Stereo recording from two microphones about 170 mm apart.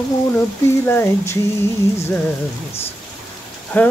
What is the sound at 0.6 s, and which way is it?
Speech, 15° left (ahead or behind).